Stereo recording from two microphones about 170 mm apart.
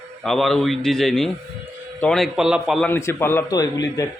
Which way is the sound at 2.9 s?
15° left (ahead or behind).